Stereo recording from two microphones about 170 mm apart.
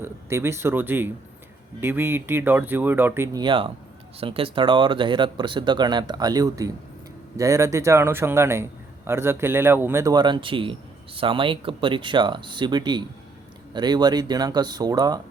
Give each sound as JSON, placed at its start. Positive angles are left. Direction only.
{"t": 0.0, "sound": "speech", "side_deg": -15}
{"t": 3.4, "sound": "a man's voice", "side_deg": -30}